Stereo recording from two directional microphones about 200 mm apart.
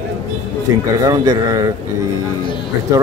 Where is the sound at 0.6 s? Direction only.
20° right (ahead or behind).